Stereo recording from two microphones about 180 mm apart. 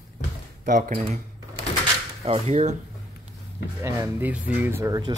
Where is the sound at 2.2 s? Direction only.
35° right (ahead or behind).